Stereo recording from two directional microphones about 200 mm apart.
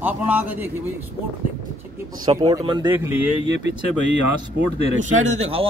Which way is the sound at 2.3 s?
20° right (ahead or behind).